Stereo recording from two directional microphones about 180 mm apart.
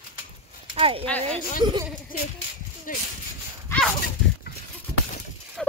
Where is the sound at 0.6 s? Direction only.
30° right (ahead or behind).